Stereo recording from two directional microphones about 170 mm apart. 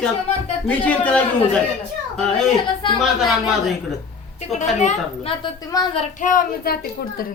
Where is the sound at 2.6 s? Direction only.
30° left (ahead or behind).